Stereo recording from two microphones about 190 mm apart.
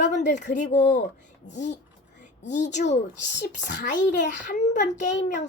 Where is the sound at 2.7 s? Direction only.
35° left (ahead or behind).